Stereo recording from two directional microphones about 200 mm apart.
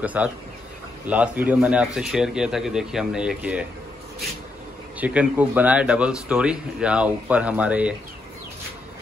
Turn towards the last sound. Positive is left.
turn(degrees=-5)  # may be behind; listen again after turning